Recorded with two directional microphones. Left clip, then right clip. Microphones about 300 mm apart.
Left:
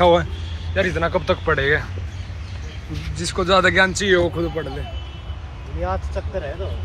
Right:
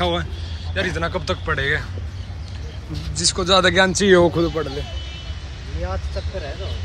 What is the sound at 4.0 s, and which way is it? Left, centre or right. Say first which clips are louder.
Speech: right 3 dB; right.